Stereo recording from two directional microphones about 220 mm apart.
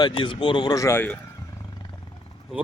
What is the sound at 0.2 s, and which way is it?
Speech, 20° left (ahead or behind).